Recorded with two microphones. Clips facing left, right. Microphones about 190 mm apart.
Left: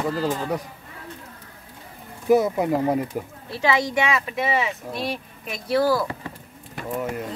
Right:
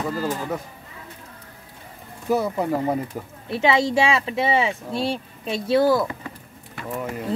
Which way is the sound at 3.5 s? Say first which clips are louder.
Right 3 dB; 25° right (ahead or behind).